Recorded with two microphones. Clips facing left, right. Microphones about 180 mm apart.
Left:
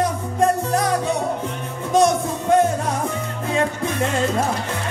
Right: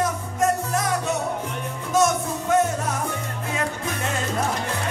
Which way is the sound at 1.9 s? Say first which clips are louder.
Left 4 dB; 30° left (ahead or behind).